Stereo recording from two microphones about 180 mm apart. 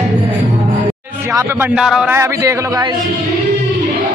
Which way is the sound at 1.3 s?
15° right (ahead or behind).